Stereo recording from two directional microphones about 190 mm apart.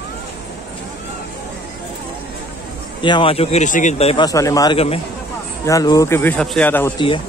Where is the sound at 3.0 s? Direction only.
25° left (ahead or behind).